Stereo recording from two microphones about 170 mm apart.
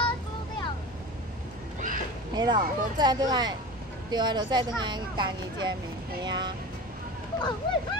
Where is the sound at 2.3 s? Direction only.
25° right (ahead or behind).